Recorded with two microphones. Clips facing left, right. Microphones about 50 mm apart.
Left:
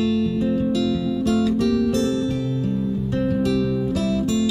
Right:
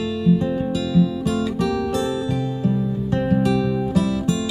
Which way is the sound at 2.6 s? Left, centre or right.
Centre.